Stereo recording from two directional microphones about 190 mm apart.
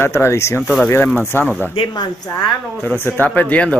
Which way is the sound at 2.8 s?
10° left (ahead or behind).